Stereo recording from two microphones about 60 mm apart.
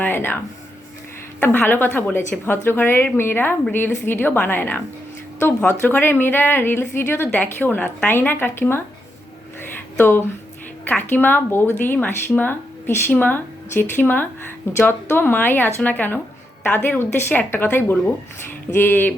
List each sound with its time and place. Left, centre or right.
0.0 s speech: left
1.4 s a woman's voice: left
7.3 s a woman's voice: left
9.6 s a sound: left
10.8 s a woman's voice: left